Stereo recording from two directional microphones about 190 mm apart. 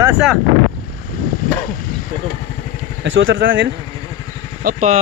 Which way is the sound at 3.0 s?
85° right.